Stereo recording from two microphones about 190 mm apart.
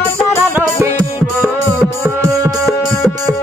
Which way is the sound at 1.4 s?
15° right (ahead or behind).